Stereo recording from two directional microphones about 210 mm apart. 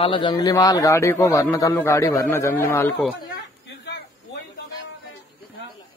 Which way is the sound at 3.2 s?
50° left (ahead or behind).